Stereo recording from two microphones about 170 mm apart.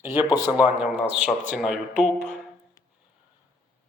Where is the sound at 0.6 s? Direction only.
10° right (ahead or behind).